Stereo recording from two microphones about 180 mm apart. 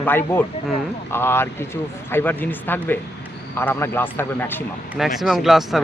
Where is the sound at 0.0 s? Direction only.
10° left (ahead or behind).